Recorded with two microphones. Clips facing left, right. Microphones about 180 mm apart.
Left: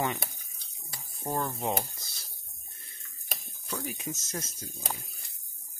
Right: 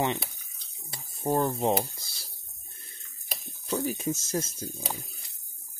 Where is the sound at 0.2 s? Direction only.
50° left (ahead or behind).